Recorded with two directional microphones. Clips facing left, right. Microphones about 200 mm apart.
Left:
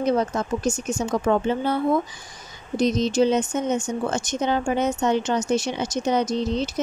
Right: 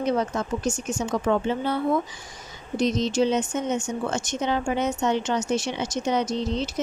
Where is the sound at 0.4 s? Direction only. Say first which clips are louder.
Left 2 dB; 40° left (ahead or behind).